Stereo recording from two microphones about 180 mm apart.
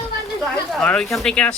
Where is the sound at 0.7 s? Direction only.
5° left (ahead or behind).